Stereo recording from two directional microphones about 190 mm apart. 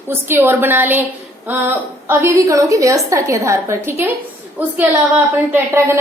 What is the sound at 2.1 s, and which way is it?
Speech, 15° right (ahead or behind).